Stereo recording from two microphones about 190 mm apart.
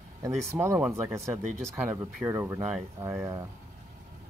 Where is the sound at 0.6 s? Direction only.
15° right (ahead or behind).